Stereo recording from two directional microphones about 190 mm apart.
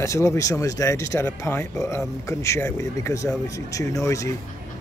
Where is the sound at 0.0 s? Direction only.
15° left (ahead or behind).